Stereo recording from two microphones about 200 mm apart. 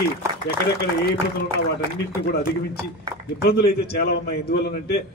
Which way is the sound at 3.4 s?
50° left (ahead or behind).